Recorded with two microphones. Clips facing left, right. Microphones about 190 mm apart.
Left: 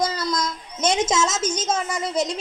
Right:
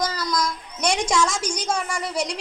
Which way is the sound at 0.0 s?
25° left (ahead or behind).